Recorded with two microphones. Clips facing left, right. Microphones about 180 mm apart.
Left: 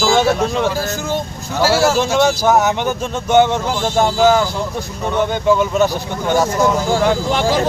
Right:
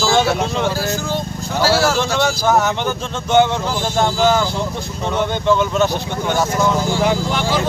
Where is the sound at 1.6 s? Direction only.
20° left (ahead or behind).